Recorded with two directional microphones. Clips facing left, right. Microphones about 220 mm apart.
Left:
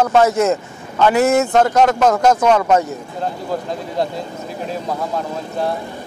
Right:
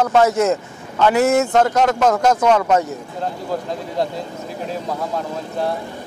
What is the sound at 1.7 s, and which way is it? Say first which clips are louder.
Speech: left 2 dB; 25° left (ahead or behind).